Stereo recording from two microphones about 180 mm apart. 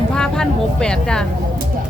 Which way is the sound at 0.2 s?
5° left (ahead or behind).